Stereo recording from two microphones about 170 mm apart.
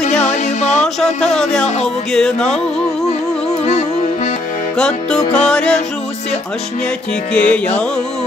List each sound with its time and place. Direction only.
0.3 s music: 45° left (ahead or behind)
1.0 s speech: 5° left (ahead or behind)
2.1 s music: 5° left (ahead or behind)
4.7 s music: 5° left (ahead or behind)
7.3 s music: 5° left (ahead or behind)